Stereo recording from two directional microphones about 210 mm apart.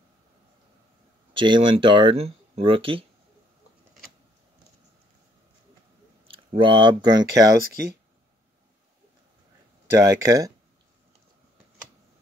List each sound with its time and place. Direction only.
1.3 s speech: 25° right (ahead or behind)
6.2 s speech: 25° right (ahead or behind)
9.8 s speech: 15° right (ahead or behind)